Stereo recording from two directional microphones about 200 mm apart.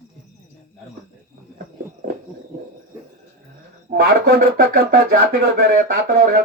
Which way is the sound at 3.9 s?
50° right (ahead or behind).